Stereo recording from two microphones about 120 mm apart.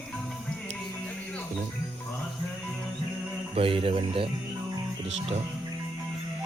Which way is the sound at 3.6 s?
50° right (ahead or behind).